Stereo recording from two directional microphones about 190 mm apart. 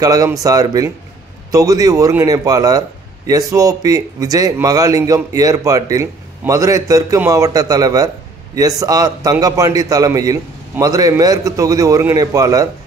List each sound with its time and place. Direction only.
0.0 s a man's voice: 20° right (ahead or behind)